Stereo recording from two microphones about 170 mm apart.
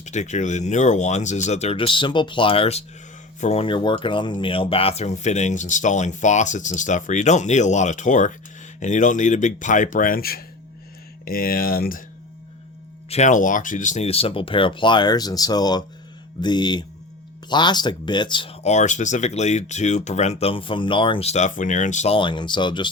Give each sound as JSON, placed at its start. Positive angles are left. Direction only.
{"t": 0.0, "sound": "speech", "side_deg": 45}
{"t": 13.1, "sound": "speech", "side_deg": 40}